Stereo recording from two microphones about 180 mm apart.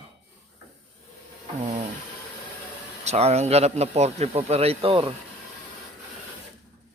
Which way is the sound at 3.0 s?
35° right (ahead or behind).